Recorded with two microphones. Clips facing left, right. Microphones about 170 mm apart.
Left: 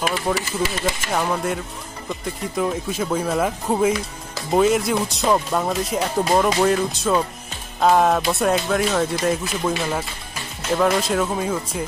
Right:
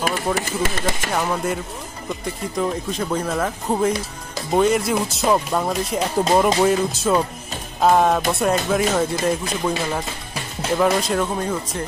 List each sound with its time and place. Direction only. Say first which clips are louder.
0.0 s speech: even; 50° right (ahead or behind)
1.1 s speech: even; centre (ahead or behind)